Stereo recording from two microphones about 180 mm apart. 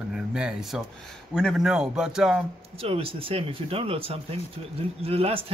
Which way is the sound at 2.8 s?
30° right (ahead or behind).